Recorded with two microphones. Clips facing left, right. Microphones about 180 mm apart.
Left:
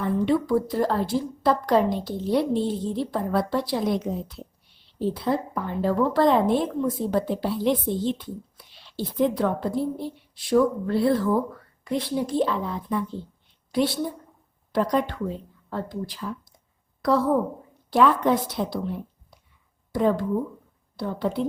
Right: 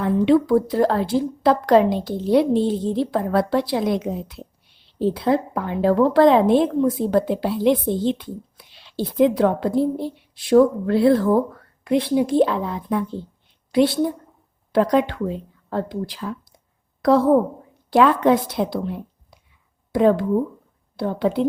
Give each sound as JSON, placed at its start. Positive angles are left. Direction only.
{"t": 0.0, "sound": "a woman's voice", "side_deg": -70}
{"t": 10.0, "sound": "speech", "side_deg": -65}
{"t": 11.9, "sound": "speech", "side_deg": -70}
{"t": 14.7, "sound": "a woman's voice", "side_deg": -80}